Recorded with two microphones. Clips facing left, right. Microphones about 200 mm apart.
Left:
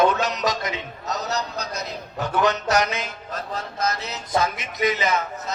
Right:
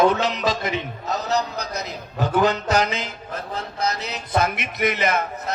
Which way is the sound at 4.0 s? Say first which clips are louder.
Right 1 dB; 60° right (ahead or behind).